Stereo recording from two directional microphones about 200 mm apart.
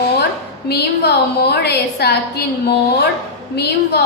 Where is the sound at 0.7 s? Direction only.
55° left (ahead or behind).